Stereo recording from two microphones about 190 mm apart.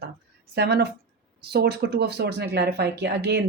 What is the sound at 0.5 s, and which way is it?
Speech, 60° right (ahead or behind).